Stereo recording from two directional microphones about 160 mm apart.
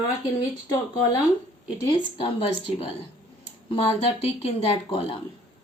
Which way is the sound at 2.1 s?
35° left (ahead or behind).